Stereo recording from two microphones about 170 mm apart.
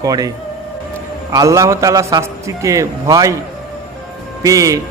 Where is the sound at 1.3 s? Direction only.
20° right (ahead or behind).